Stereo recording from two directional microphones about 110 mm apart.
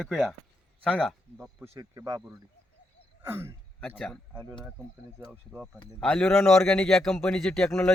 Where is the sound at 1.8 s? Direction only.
35° right (ahead or behind).